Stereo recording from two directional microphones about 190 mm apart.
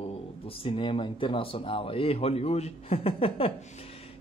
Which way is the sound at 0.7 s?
25° left (ahead or behind).